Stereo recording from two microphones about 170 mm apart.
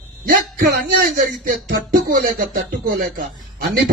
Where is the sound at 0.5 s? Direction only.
65° right (ahead or behind).